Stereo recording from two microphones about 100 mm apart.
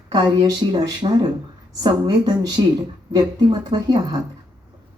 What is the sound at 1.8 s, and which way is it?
Speech, 40° right (ahead or behind).